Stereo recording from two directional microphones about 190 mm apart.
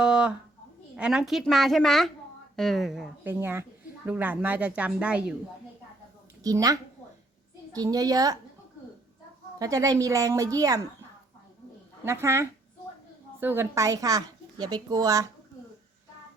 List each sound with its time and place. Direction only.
0.0 s a sound: 5° right (ahead or behind)
0.9 s a woman's voice: 5° right (ahead or behind)
3.4 s a woman's voice: 10° right (ahead or behind)
6.4 s a woman's voice: 20° right (ahead or behind)
9.6 s a woman's voice: 20° right (ahead or behind)
12.0 s a woman's voice: 15° right (ahead or behind)